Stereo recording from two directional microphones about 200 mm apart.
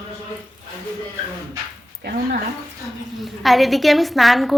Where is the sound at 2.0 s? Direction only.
45° right (ahead or behind).